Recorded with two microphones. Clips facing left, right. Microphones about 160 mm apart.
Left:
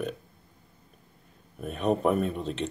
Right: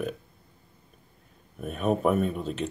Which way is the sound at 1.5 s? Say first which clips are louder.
Even; centre (ahead or behind).